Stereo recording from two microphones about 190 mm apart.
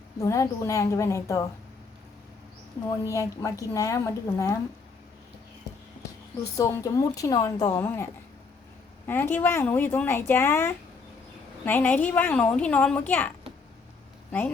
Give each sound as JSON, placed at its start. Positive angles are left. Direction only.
{"t": 0.2, "sound": "a woman's voice", "side_deg": 15}
{"t": 3.0, "sound": "a woman's voice", "side_deg": 15}
{"t": 6.6, "sound": "a woman's voice", "side_deg": 15}
{"t": 9.0, "sound": "a woman's voice", "side_deg": 10}